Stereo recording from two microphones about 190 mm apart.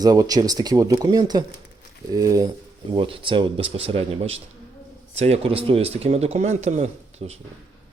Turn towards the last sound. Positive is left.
turn(degrees=-35)  # may be behind; listen again after turning